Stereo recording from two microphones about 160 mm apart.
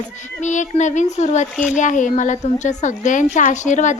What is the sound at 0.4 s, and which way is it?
A woman's voice, 50° left (ahead or behind).